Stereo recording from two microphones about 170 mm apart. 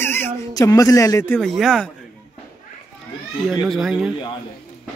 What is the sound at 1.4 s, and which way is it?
Speech, centre (ahead or behind).